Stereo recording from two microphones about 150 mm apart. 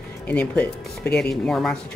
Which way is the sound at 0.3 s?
10° left (ahead or behind).